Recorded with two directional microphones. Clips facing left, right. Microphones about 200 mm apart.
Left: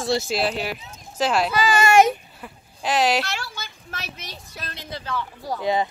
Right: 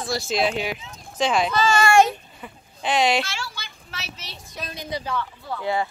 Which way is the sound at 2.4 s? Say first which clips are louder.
Even; 5° left (ahead or behind).